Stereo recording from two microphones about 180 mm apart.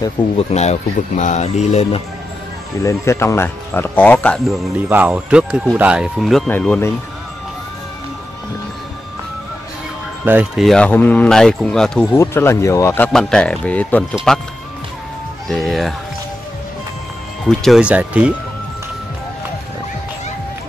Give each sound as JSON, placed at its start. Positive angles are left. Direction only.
{"t": 0.4, "sound": "speech", "side_deg": 35}
{"t": 2.8, "sound": "speech", "side_deg": 15}
{"t": 4.7, "sound": "speech", "side_deg": -10}
{"t": 10.2, "sound": "speech", "side_deg": -10}
{"t": 10.6, "sound": "speech", "side_deg": 5}
{"t": 17.5, "sound": "speech", "side_deg": 0}